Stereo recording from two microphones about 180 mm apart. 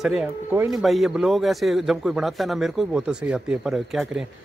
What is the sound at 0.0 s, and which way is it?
A man's voice, 5° right (ahead or behind).